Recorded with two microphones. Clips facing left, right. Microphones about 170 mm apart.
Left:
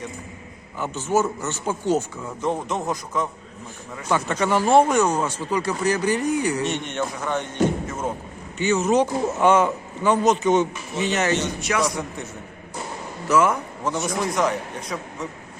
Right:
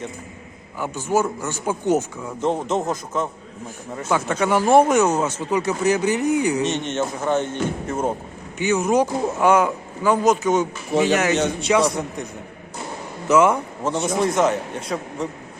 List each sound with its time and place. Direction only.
0.8 s a man's voice: 15° right (ahead or behind)
4.1 s a man's voice: 5° right (ahead or behind); by 8.1 s 30° right (ahead or behind)
8.5 s a man's voice: 15° right (ahead or behind)
10.9 s speech: 90° right
11.9 s a man's voice: 15° right (ahead or behind)